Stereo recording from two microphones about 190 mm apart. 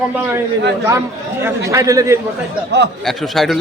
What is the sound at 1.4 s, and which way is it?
Speech, 15° right (ahead or behind).